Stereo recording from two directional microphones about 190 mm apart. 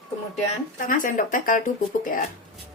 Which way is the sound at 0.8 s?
45° left (ahead or behind).